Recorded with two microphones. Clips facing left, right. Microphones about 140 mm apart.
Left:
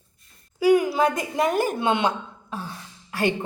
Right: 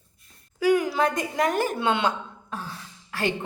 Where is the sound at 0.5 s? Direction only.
10° left (ahead or behind).